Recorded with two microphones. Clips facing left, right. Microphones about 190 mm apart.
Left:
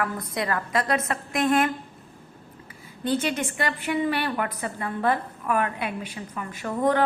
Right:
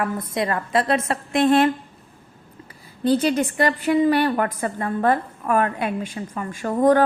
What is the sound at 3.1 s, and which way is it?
A woman's voice, 35° right (ahead or behind).